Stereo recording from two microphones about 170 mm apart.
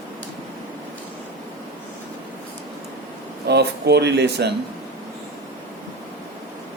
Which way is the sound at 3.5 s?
75° right (ahead or behind).